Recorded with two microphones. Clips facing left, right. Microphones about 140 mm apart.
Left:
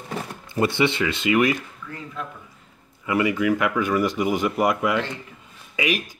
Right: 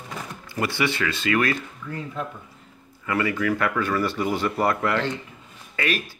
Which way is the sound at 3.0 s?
15° left (ahead or behind).